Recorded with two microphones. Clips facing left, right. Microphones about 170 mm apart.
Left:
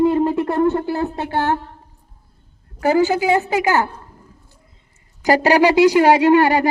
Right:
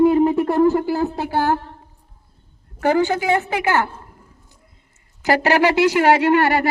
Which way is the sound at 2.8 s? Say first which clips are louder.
Left 2 dB; 10° left (ahead or behind).